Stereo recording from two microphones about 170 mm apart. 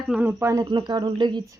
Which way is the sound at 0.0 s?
5° right (ahead or behind).